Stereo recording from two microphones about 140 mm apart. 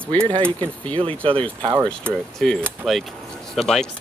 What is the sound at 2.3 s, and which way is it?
Speech, 5° left (ahead or behind).